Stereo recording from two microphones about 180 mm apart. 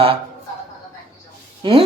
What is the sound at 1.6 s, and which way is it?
Speech, 30° right (ahead or behind).